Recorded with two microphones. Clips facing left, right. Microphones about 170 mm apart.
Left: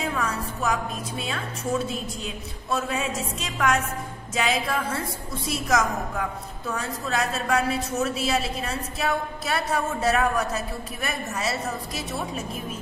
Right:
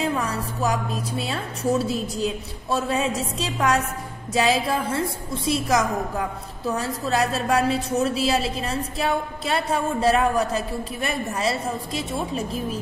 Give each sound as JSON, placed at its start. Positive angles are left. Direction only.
{"t": 0.0, "sound": "a woman's voice", "side_deg": -35}